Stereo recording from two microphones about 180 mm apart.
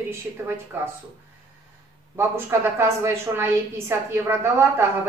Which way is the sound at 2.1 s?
15° right (ahead or behind).